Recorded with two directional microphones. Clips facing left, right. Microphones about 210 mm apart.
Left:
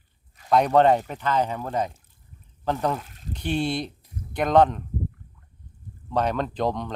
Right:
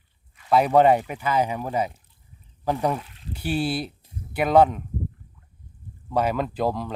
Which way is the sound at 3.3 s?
5° right (ahead or behind).